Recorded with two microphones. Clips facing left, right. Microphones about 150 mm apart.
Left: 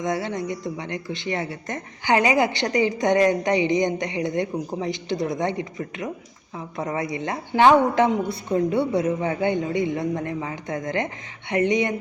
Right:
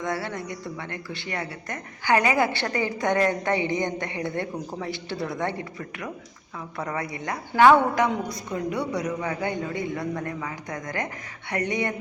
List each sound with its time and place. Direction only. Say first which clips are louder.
0.0 s speech: left 4 dB; 20° left (ahead or behind)